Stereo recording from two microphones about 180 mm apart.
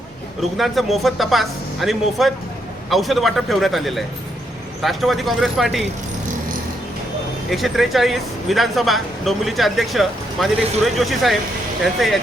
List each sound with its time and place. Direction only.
0.5 s speech: centre (ahead or behind)
7.5 s speech: centre (ahead or behind)